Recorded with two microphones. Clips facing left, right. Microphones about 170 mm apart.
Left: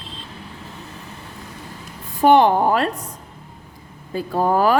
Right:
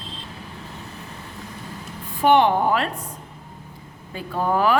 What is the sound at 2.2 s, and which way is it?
Speech, 40° left (ahead or behind).